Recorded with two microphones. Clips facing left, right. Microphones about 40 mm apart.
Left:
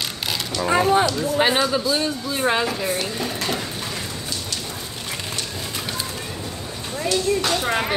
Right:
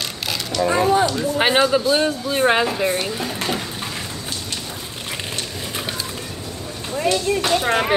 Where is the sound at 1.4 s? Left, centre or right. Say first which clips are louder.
Right 3 dB; right.